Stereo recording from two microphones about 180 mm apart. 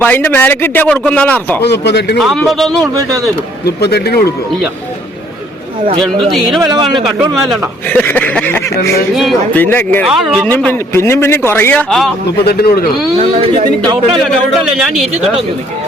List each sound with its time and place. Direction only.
0.0 s a man's voice: 10° left (ahead or behind)
1.6 s speech: 70° left (ahead or behind)
2.2 s a man's voice: centre (ahead or behind)
2.8 s a man's voice: 20° right (ahead or behind)
3.8 s speech: 65° left (ahead or behind)
7.3 s a man's voice: 5° left (ahead or behind)
9.1 s a man's voice: centre (ahead or behind)
9.6 s a man's voice: 10° left (ahead or behind)
10.1 s a man's voice: 5° right (ahead or behind)
10.5 s a man's voice: 10° left (ahead or behind)
12.5 s speech: 60° left (ahead or behind)
13.1 s speech: 35° right (ahead or behind)
14.1 s a man's voice: centre (ahead or behind)